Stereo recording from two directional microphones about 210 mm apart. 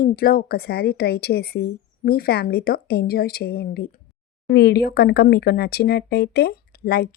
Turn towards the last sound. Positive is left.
turn(degrees=45)  # may be behind; listen again after turning